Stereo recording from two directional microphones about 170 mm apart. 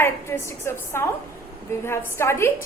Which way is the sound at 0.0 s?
15° left (ahead or behind).